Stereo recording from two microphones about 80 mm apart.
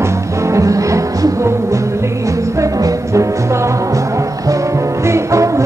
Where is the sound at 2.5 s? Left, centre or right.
Right.